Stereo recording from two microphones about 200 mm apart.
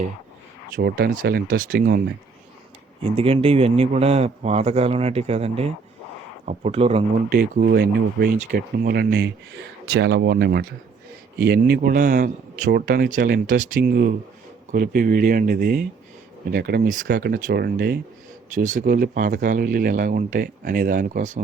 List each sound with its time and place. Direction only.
0.8 s speech: 50° right (ahead or behind)
3.0 s a man's voice: 30° right (ahead or behind)
7.3 s speech: 45° right (ahead or behind)
18.5 s speech: 40° right (ahead or behind)